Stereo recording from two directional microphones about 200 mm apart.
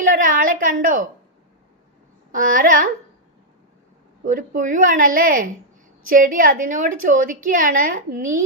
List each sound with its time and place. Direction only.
0.2 s a woman's voice: 40° right (ahead or behind)
2.3 s a sound: 40° right (ahead or behind)
4.2 s a woman's voice: 40° right (ahead or behind)